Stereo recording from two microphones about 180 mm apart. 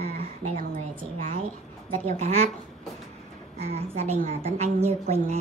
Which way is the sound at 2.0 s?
35° right (ahead or behind).